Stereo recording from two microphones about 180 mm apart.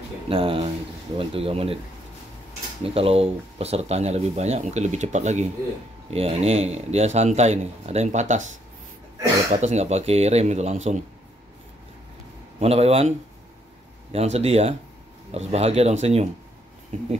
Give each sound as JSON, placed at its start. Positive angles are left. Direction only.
{"t": 0.3, "sound": "speech", "side_deg": -30}
{"t": 2.8, "sound": "speech", "side_deg": -30}
{"t": 9.5, "sound": "speech", "side_deg": -40}
{"t": 12.5, "sound": "speech", "side_deg": -35}
{"t": 14.1, "sound": "speech", "side_deg": -35}